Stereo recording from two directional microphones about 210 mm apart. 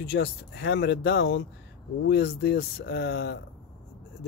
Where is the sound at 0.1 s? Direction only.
55° left (ahead or behind).